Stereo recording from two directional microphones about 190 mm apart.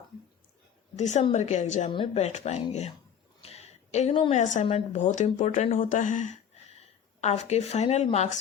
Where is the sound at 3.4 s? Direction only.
35° left (ahead or behind).